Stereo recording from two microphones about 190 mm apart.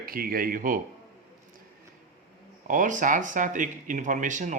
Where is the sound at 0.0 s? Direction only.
50° right (ahead or behind).